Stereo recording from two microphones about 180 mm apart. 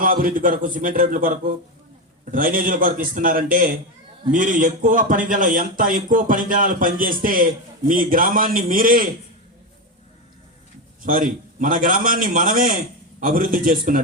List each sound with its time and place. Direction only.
0.0 s speech: 50° right (ahead or behind)
11.0 s speech: 50° right (ahead or behind)